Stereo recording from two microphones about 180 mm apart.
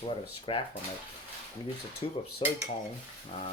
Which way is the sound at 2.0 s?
30° left (ahead or behind).